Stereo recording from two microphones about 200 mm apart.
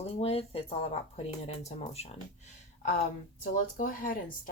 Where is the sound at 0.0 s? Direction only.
30° left (ahead or behind).